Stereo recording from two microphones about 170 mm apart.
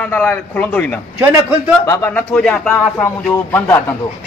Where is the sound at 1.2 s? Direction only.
15° right (ahead or behind).